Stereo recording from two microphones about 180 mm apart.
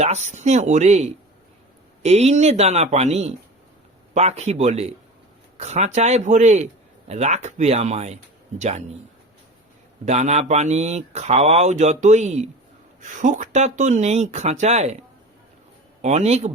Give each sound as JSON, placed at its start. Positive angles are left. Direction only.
{"t": 0.0, "sound": "speech", "side_deg": -40}
{"t": 10.1, "sound": "speech", "side_deg": -40}
{"t": 16.0, "sound": "speech", "side_deg": -40}